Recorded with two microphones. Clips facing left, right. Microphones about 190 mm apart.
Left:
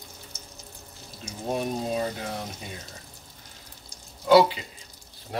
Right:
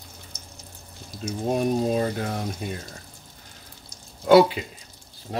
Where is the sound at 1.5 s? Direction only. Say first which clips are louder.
Right 5 dB; 50° right (ahead or behind).